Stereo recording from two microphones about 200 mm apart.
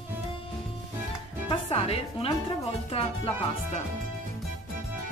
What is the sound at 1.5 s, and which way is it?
Music, 30° left (ahead or behind).